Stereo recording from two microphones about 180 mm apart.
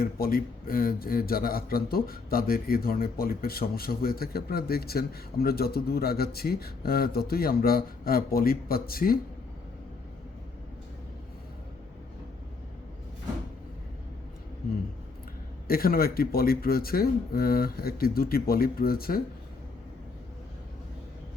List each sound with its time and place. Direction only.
0.0 s speech: 55° left (ahead or behind)
15.6 s speech: 55° left (ahead or behind)